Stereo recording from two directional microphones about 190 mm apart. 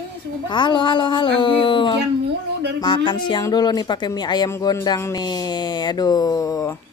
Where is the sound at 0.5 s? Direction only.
25° left (ahead or behind).